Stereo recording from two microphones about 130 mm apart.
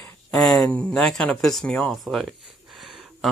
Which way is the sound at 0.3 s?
Centre (ahead or behind).